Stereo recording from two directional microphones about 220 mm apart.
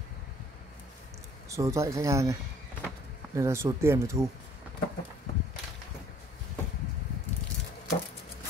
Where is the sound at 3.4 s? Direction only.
10° right (ahead or behind).